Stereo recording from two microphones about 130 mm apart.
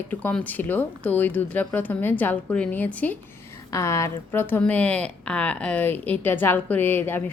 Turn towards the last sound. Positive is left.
turn(degrees=15)  # may be behind; listen again after turning